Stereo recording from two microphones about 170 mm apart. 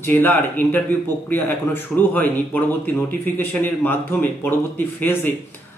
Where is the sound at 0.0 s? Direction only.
10° left (ahead or behind).